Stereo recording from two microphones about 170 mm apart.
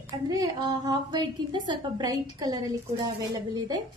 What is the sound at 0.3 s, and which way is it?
A woman's voice, 25° right (ahead or behind).